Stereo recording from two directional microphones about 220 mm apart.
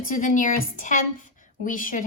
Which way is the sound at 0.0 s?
40° left (ahead or behind).